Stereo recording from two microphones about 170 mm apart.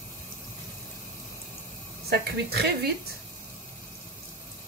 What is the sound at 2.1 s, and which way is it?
Speech, 70° right (ahead or behind).